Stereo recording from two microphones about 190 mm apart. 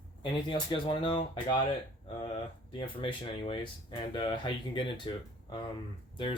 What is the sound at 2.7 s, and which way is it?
Speech, 25° left (ahead or behind).